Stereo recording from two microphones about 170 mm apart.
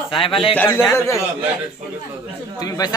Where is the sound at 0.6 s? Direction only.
15° left (ahead or behind).